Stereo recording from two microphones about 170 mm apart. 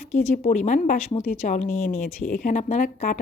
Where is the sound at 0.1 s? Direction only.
45° left (ahead or behind).